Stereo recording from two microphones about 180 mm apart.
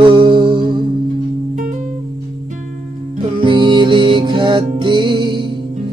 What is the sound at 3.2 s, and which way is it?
Music, 30° right (ahead or behind).